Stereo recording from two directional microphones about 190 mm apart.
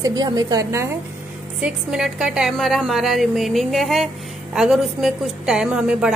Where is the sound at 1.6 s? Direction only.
5° right (ahead or behind).